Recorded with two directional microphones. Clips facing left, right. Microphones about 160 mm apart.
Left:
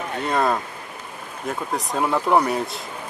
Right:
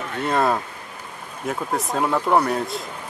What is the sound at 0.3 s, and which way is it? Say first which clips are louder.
Speech: right 1 dB; 5° right (ahead or behind).